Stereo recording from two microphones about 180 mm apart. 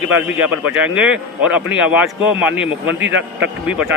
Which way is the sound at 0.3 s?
5° right (ahead or behind).